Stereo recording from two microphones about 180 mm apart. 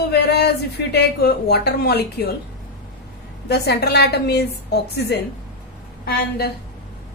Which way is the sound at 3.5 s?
65° left (ahead or behind).